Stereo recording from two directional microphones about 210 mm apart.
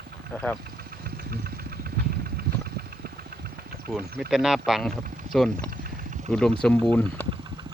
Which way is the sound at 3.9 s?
5° left (ahead or behind).